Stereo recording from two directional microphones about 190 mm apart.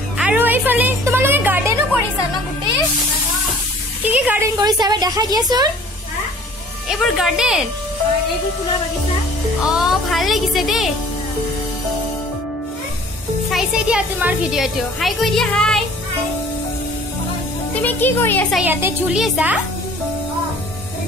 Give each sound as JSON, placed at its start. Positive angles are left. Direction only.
{"t": 0.2, "sound": "a woman's voice", "side_deg": -5}
{"t": 4.0, "sound": "a woman's voice", "side_deg": -10}
{"t": 6.9, "sound": "a child's voice", "side_deg": 0}
{"t": 9.7, "sound": "a child's voice", "side_deg": 0}
{"t": 13.5, "sound": "a child's voice", "side_deg": -5}
{"t": 17.8, "sound": "speech", "side_deg": 10}
{"t": 18.5, "sound": "a child's voice", "side_deg": -10}